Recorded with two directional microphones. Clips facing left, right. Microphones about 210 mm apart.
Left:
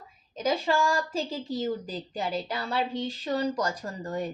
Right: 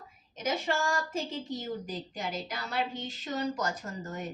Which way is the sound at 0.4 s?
90° left.